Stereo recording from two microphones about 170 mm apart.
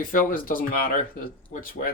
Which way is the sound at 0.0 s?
55° left (ahead or behind).